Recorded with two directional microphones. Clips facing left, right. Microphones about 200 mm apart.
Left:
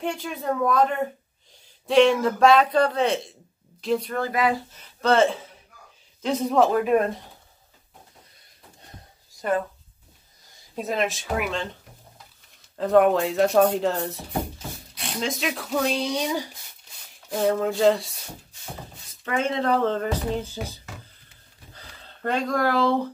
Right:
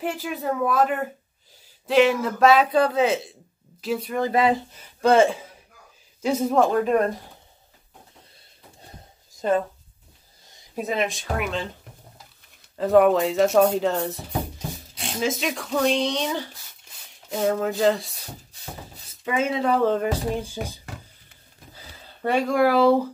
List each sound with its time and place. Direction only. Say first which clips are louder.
0.0 s speech: right 1 dB; 5° right (ahead or behind)
4.3 s speech: right 3 dB; 25° right (ahead or behind)
4.7 s speech: right 3 dB; 10° right (ahead or behind); by 7.2 s 5° left (ahead or behind)
9.4 s speech: right 3 dB; 25° right (ahead or behind)
10.8 s speech: even; centre (ahead or behind)
12.7 s speech: right 1 dB; centre (ahead or behind)
16.9 s speech: left 1 dB; centre (ahead or behind)
19.2 s speech: right 1 dB; 5° right (ahead or behind)
21.7 s a sound: even; 10° right (ahead or behind)